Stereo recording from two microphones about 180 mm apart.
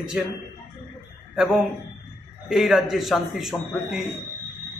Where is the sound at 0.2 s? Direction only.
5° right (ahead or behind).